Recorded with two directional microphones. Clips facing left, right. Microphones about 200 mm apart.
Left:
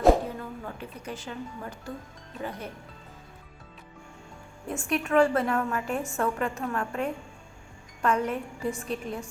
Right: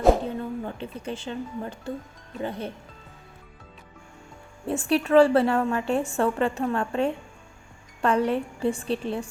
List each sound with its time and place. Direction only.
0.3 s a woman's voice: 25° right (ahead or behind)
4.6 s a woman's voice: 35° right (ahead or behind)